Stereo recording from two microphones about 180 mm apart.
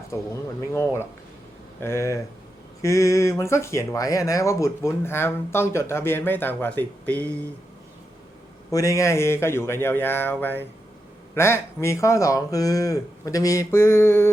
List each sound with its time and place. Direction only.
1.8 s speech: 15° left (ahead or behind)
8.7 s speech: 20° left (ahead or behind)